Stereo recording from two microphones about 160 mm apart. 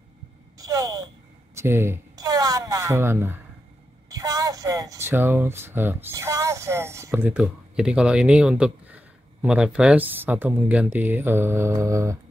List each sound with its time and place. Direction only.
0.6 s speech: 20° right (ahead or behind)